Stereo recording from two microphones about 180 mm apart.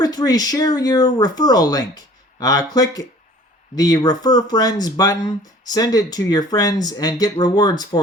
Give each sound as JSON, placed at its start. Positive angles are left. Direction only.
{"t": 0.0, "sound": "speech", "side_deg": 20}
{"t": 3.8, "sound": "speech", "side_deg": 20}